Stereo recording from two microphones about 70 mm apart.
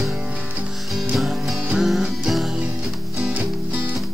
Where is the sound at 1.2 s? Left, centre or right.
Centre.